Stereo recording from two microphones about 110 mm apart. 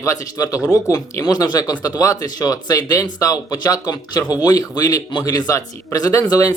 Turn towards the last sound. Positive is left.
turn(degrees=35)  # may be behind; listen again after turning